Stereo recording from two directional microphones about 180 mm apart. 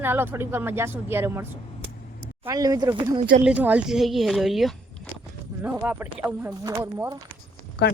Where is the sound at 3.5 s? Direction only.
10° right (ahead or behind).